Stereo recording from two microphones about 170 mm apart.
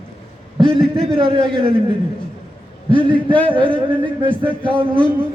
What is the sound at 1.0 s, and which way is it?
Speech, 30° right (ahead or behind).